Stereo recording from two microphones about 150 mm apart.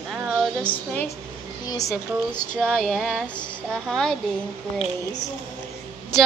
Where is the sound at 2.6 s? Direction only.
5° left (ahead or behind).